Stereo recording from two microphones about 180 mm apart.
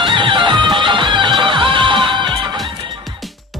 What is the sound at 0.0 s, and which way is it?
Music, 25° right (ahead or behind).